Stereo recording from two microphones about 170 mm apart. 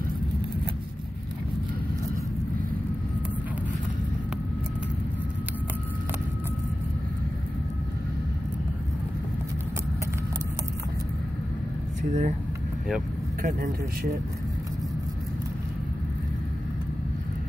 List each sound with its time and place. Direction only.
12.0 s speech: 45° right (ahead or behind)
13.4 s speech: 60° right (ahead or behind)